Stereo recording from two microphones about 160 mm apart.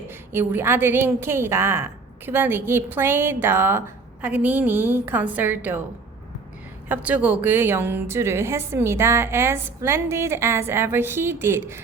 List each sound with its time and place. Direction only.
0.3 s a woman's voice: 15° right (ahead or behind)
6.8 s a woman's voice: 10° right (ahead or behind)